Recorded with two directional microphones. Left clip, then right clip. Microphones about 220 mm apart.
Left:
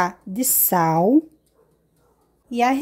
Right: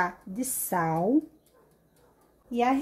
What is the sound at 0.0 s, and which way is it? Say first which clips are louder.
A woman's voice: left 7 dB; 40° left (ahead or behind).